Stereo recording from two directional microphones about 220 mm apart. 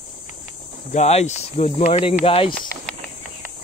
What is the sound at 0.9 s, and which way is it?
Speech, 30° left (ahead or behind).